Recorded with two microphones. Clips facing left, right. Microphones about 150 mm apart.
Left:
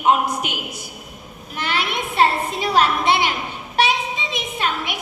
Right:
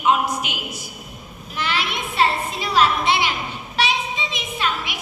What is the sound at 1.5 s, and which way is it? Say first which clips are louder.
A woman's voice: left 1 dB; 50° left (ahead or behind).